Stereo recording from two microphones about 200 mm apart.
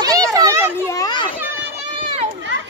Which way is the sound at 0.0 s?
15° right (ahead or behind).